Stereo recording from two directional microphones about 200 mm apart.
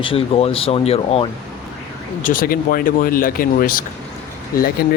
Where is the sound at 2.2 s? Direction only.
45° left (ahead or behind).